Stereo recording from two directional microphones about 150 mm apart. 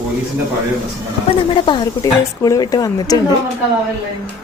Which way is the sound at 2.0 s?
20° left (ahead or behind).